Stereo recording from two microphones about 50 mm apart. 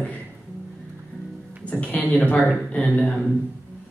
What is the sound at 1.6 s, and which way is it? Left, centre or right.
A man's voice, left.